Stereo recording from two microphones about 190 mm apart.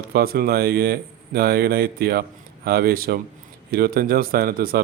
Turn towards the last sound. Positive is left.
turn(degrees=-50)  # may be behind; listen again after turning